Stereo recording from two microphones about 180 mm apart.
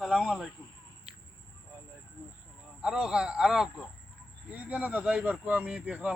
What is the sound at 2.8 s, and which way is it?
Speech, 5° right (ahead or behind).